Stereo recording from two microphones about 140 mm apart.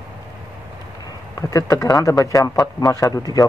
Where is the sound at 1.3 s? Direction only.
25° left (ahead or behind).